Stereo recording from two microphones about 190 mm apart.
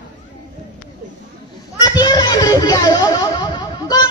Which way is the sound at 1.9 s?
20° left (ahead or behind).